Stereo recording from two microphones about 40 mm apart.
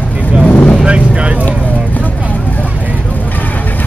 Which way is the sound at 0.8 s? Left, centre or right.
Right.